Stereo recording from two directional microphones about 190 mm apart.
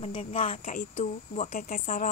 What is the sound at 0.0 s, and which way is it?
A woman's voice, 30° left (ahead or behind).